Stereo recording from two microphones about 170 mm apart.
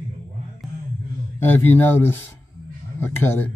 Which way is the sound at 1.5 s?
10° left (ahead or behind).